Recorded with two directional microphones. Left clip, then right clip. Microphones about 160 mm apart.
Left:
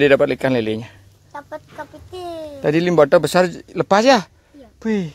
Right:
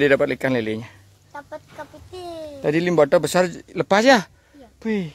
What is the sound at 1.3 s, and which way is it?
Chicken, 30° left (ahead or behind).